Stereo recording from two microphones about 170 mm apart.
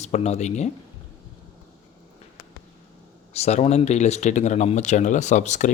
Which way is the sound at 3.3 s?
40° left (ahead or behind).